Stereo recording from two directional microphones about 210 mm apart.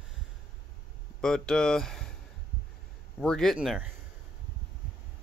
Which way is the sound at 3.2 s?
5° left (ahead or behind).